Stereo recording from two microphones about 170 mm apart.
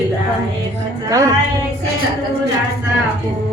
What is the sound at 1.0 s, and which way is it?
Speech, 20° right (ahead or behind).